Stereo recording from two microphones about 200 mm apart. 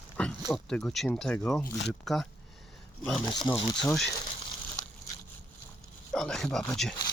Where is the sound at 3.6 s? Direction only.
5° left (ahead or behind).